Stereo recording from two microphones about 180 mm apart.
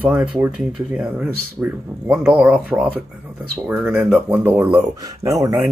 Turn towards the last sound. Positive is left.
turn(degrees=-20)  # may be behind; listen again after turning